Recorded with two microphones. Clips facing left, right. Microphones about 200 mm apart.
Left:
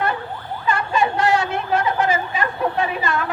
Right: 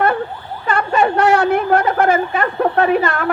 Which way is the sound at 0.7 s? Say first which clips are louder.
Right 4 dB; 60° right (ahead or behind).